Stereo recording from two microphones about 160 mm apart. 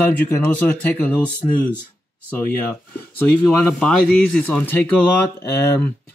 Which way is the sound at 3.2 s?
10° left (ahead or behind).